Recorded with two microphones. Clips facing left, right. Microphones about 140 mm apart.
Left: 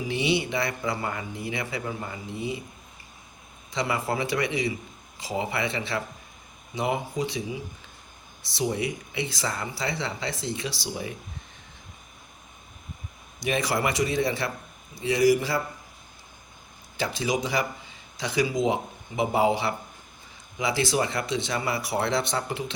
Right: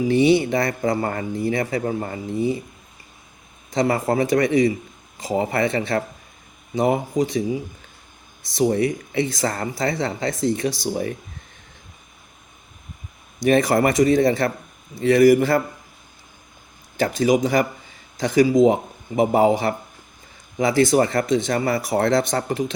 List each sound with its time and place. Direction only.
0.1 s speech: 50° right (ahead or behind)
3.7 s speech: 45° right (ahead or behind)
13.4 s speech: 50° right (ahead or behind)
17.0 s speech: 50° right (ahead or behind)